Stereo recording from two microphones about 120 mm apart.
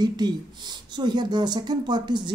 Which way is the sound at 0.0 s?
35° right (ahead or behind).